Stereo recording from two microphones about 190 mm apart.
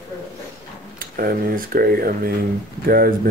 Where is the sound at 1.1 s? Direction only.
50° right (ahead or behind).